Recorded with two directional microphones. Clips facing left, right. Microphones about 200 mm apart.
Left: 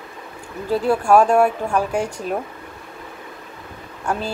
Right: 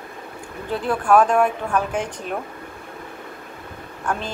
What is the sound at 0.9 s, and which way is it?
Speech, 10° left (ahead or behind).